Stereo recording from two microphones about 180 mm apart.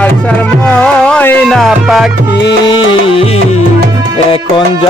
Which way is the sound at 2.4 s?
90° left.